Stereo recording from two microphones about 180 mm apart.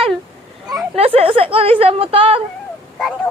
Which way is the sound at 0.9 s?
35° right (ahead or behind).